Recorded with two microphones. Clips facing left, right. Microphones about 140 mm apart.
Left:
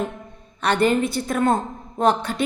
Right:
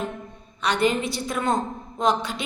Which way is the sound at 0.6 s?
50° left (ahead or behind).